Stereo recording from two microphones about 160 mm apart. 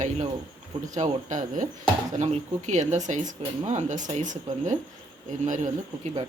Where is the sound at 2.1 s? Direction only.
40° right (ahead or behind).